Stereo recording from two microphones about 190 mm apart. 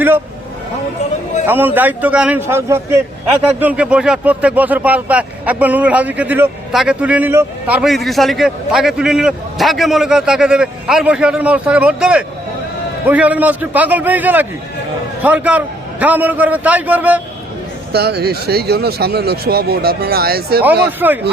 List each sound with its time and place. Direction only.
1.5 s speech: 10° right (ahead or behind)
17.9 s speech: 60° right (ahead or behind)
21.0 s speech: 10° right (ahead or behind)